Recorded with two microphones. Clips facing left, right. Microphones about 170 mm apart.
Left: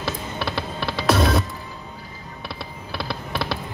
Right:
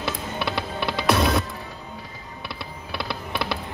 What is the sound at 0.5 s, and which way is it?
Music, 15° right (ahead or behind).